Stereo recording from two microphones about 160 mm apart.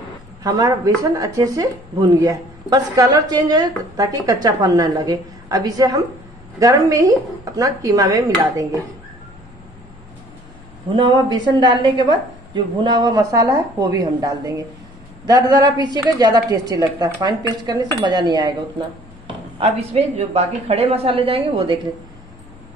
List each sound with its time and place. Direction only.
0.4 s a woman's voice: 20° right (ahead or behind)
11.0 s a woman's voice: 25° right (ahead or behind)
19.2 s a woman's voice: 40° right (ahead or behind)